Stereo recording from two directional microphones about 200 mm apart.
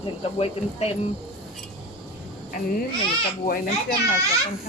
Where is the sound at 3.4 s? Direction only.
45° left (ahead or behind).